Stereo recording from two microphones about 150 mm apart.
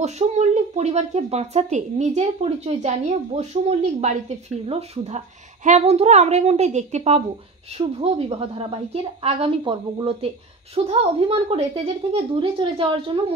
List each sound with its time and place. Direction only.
0.0 s a woman's voice: 50° right (ahead or behind)